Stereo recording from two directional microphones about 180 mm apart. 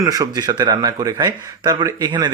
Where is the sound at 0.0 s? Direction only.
20° right (ahead or behind).